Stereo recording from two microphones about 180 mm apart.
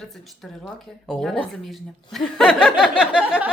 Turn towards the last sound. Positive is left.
turn(degrees=-5)  # may be behind; listen again after turning